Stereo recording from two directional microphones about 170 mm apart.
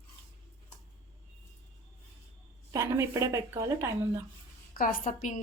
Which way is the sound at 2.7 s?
15° right (ahead or behind).